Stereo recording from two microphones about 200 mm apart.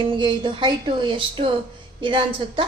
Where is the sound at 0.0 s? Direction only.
25° right (ahead or behind).